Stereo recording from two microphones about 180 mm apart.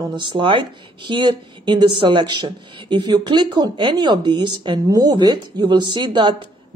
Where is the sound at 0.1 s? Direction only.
25° right (ahead or behind).